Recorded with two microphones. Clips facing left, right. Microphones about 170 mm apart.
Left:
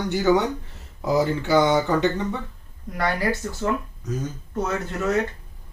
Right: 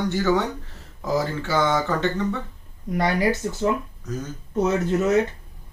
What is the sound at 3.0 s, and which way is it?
Speech, 20° right (ahead or behind).